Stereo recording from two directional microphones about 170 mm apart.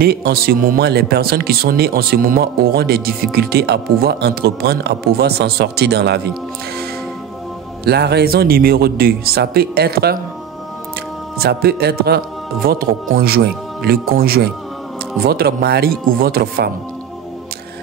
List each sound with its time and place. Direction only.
0.0 s speech: 60° right (ahead or behind)
7.8 s speech: 70° right (ahead or behind)
11.4 s speech: 65° right (ahead or behind)